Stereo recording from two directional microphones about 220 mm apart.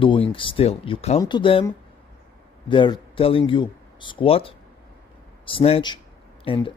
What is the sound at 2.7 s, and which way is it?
Speech, 20° left (ahead or behind).